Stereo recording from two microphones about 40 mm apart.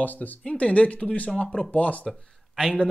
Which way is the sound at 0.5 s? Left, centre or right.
Left.